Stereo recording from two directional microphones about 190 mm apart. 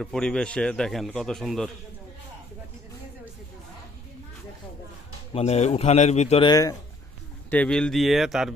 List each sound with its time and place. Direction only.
0.0 s a man's voice: 5° left (ahead or behind)
5.3 s speech: 35° left (ahead or behind)
6.5 s speech: 20° left (ahead or behind)
7.5 s a man's voice: 5° left (ahead or behind)